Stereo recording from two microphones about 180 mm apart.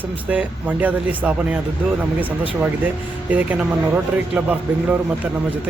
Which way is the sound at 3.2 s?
10° right (ahead or behind).